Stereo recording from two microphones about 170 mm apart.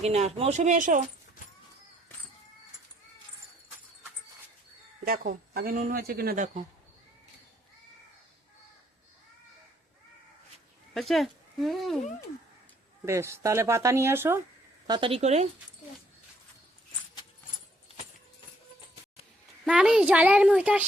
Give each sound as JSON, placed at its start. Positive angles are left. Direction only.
{"t": 0.0, "sound": "speech", "side_deg": -40}
{"t": 5.0, "sound": "speech", "side_deg": -60}
{"t": 10.9, "sound": "speech", "side_deg": 0}
{"t": 13.1, "sound": "speech", "side_deg": -15}
{"t": 14.8, "sound": "speech", "side_deg": -30}
{"t": 19.6, "sound": "speech", "side_deg": -5}